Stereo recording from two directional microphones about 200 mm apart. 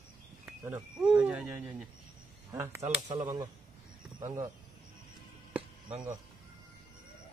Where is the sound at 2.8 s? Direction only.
25° right (ahead or behind).